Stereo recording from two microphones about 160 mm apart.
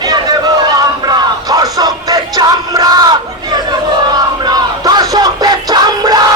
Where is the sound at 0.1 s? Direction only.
25° right (ahead or behind).